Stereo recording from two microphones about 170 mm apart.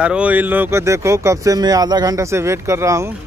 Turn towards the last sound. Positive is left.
turn(degrees=-15)  # may be behind; listen again after turning